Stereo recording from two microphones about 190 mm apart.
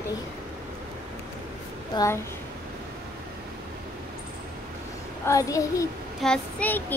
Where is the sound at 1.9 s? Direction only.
25° left (ahead or behind).